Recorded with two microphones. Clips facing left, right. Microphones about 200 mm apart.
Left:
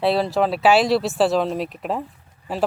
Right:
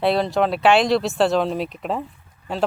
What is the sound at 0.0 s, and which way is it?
Speech, centre (ahead or behind).